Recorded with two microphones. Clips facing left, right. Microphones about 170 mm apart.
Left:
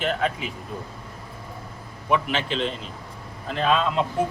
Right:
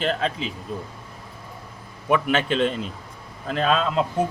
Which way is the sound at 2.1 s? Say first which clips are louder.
Right 3 dB; 50° right (ahead or behind).